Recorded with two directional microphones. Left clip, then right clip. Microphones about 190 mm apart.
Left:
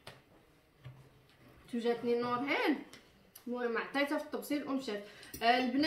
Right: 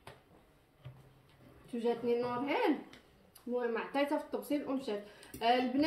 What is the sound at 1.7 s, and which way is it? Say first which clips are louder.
A woman's voice: even; 15° left (ahead or behind).